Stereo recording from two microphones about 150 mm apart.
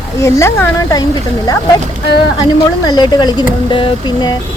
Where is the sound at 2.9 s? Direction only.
30° left (ahead or behind).